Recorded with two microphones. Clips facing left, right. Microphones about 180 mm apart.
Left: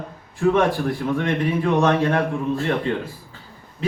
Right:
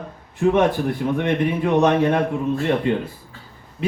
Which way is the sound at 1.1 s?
20° right (ahead or behind).